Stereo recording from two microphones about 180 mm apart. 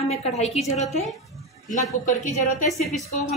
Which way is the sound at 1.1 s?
Centre (ahead or behind).